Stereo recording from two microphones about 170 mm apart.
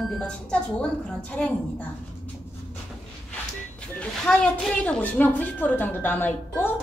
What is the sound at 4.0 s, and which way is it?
A woman's voice, 5° left (ahead or behind).